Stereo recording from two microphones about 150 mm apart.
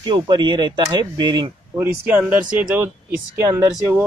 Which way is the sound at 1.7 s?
15° right (ahead or behind).